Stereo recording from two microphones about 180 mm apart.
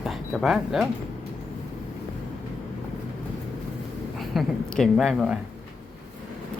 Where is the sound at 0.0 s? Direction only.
Centre (ahead or behind).